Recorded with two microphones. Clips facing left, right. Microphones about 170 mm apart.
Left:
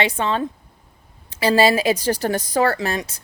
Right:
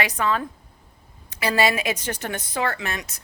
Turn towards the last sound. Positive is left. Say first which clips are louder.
# left 7 dB
turn(degrees=30)  # may be behind; listen again after turning